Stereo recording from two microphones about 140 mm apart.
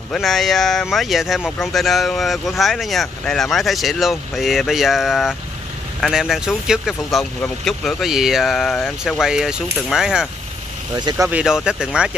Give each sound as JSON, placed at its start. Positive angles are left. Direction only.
{"t": 0.1, "sound": "speech", "side_deg": 0}
{"t": 11.0, "sound": "speech", "side_deg": -30}
{"t": 11.2, "sound": "speech", "side_deg": -5}